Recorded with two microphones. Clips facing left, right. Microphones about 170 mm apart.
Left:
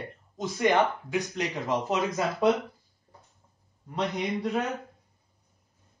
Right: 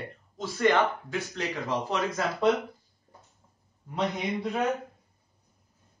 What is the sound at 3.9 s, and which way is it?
Speech, centre (ahead or behind).